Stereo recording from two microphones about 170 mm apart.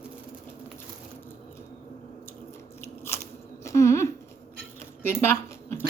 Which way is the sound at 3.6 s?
15° left (ahead or behind).